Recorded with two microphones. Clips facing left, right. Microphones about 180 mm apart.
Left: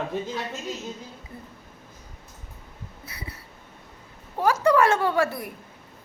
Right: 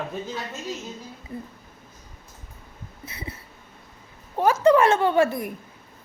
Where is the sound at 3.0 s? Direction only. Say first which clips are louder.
Right 4 dB; 25° right (ahead or behind).